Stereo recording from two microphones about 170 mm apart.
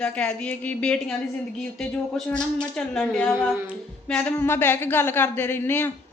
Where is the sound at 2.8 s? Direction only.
5° left (ahead or behind).